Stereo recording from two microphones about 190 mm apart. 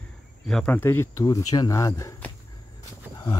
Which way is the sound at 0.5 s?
5° left (ahead or behind).